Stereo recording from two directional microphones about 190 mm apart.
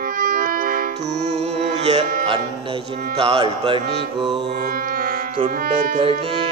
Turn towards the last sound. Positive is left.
turn(degrees=-30)  # may be behind; listen again after turning